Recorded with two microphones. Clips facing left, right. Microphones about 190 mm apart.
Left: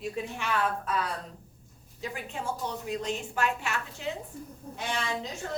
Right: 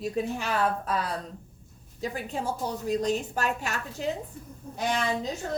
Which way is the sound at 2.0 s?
35° right (ahead or behind).